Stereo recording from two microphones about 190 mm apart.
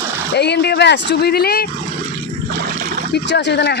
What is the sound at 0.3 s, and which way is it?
Speech, 60° left (ahead or behind).